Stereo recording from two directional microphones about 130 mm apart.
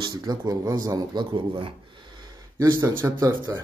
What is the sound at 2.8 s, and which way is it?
Speech, 20° right (ahead or behind).